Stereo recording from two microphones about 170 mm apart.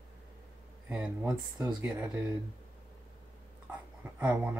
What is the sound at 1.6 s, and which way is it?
Speech, 20° right (ahead or behind).